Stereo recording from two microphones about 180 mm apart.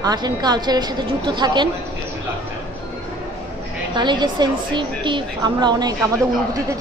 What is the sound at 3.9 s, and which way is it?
A woman's voice, 25° right (ahead or behind).